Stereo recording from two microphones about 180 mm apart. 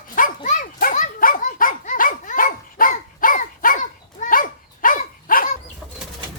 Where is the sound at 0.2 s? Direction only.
45° left (ahead or behind).